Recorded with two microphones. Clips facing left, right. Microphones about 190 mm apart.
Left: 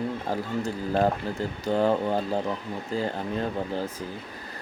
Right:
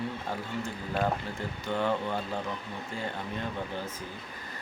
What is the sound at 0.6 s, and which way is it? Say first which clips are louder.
Speech: left 6 dB; 40° left (ahead or behind).